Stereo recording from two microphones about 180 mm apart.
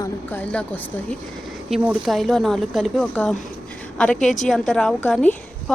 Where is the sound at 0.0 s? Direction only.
10° left (ahead or behind).